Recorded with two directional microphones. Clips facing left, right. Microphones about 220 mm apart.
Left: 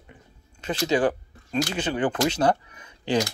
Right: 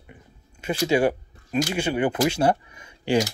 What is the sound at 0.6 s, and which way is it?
Speech, 10° right (ahead or behind).